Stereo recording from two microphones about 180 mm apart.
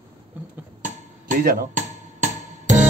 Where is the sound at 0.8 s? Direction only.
50° right (ahead or behind).